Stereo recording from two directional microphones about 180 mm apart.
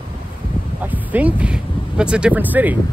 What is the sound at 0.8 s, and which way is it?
Speech, 10° right (ahead or behind).